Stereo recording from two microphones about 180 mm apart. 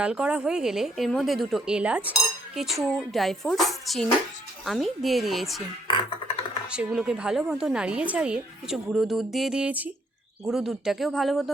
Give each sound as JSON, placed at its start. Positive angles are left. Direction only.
{"t": 0.0, "sound": "a woman's voice", "side_deg": -5}
{"t": 6.2, "sound": "computer keyboard", "side_deg": 35}
{"t": 6.7, "sound": "a woman's voice", "side_deg": -5}